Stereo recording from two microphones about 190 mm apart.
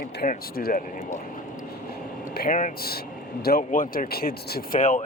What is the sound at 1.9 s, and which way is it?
Air conditioning, 55° left (ahead or behind).